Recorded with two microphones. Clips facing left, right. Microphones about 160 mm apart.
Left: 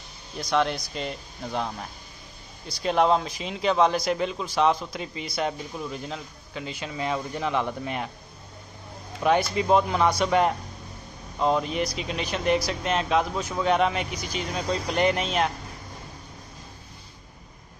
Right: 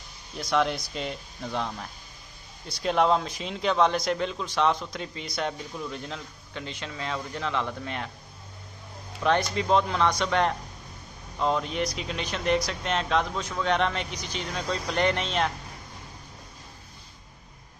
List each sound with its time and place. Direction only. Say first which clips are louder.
0.4 s a man's voice: left 1 dB; centre (ahead or behind)
9.2 s a man's voice: left 2 dB; 10° left (ahead or behind)